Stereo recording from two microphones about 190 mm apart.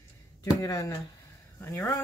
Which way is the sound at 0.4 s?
20° left (ahead or behind).